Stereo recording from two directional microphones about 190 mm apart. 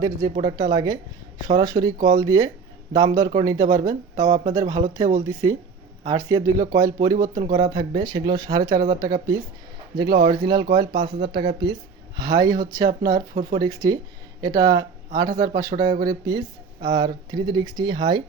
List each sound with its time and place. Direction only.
0.0 s a woman's voice: 20° right (ahead or behind)
10.0 s speech: 55° right (ahead or behind)
10.5 s speech: 25° right (ahead or behind)